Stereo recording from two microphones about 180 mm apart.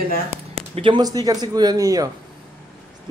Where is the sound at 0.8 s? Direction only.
25° right (ahead or behind).